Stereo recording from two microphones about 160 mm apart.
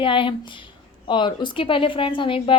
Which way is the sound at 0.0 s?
30° left (ahead or behind).